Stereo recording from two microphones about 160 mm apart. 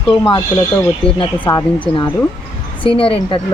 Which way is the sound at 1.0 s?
35° left (ahead or behind).